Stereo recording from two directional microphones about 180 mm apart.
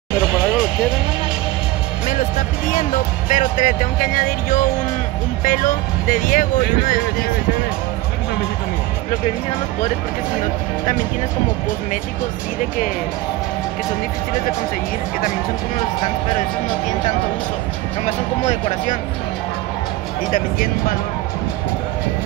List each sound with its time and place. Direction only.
0.2 s music: 5° right (ahead or behind)
2.7 s speech: 45° left (ahead or behind)
18.0 s speech: 40° left (ahead or behind)
20.3 s speech: 50° left (ahead or behind)